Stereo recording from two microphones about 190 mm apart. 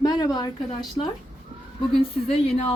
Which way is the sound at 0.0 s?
20° left (ahead or behind).